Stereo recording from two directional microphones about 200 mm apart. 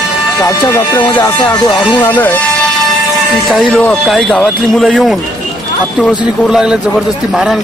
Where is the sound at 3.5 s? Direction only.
Centre (ahead or behind).